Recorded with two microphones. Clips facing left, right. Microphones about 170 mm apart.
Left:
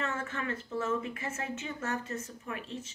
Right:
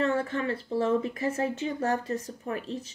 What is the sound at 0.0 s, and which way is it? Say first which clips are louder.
Speech: right 9 dB; 35° right (ahead or behind).